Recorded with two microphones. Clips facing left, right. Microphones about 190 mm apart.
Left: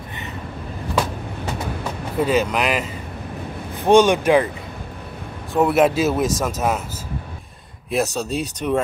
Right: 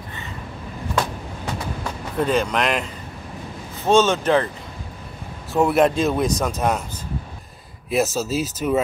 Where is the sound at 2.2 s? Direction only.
5° left (ahead or behind).